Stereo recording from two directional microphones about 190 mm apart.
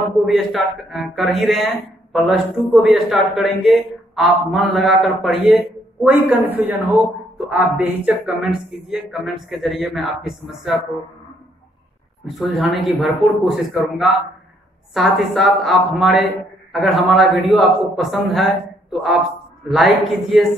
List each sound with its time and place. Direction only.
0.3 s a man's voice: centre (ahead or behind)
12.3 s a man's voice: centre (ahead or behind)